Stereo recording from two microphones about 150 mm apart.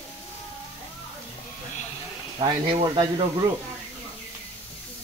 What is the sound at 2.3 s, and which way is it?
Speech, 30° right (ahead or behind).